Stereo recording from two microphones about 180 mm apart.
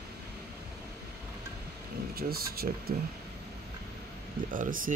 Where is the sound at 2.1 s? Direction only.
60° right (ahead or behind).